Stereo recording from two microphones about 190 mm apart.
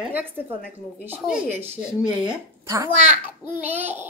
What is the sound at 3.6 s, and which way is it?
Speech, 10° right (ahead or behind).